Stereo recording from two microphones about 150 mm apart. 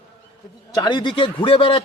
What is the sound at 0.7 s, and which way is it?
Speech, 30° left (ahead or behind).